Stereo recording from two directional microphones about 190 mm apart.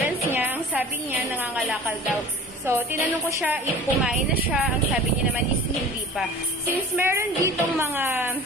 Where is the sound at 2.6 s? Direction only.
15° right (ahead or behind).